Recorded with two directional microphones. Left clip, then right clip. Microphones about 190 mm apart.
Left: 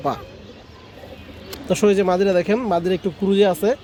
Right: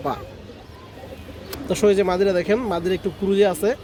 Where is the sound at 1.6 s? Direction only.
50° left (ahead or behind).